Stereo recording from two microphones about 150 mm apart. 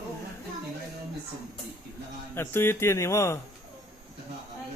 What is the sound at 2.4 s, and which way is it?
Speech, 15° left (ahead or behind).